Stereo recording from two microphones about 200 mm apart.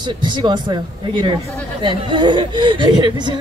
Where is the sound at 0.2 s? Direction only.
25° right (ahead or behind).